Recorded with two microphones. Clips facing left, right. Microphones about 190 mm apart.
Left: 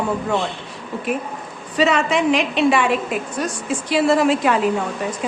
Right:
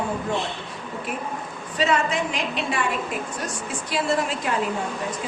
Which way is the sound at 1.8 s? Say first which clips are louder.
Left 5 dB; 80° left.